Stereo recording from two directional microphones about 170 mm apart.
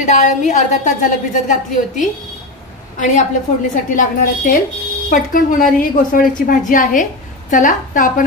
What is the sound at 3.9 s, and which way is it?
A woman's voice, 50° left (ahead or behind).